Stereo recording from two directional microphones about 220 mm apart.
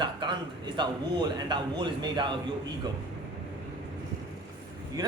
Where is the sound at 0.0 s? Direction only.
20° right (ahead or behind).